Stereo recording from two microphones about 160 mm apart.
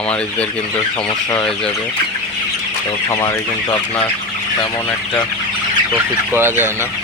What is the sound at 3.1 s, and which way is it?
Speech, 20° left (ahead or behind).